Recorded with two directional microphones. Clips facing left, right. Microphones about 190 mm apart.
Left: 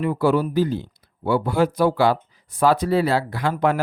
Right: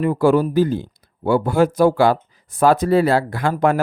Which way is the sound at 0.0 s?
45° right (ahead or behind).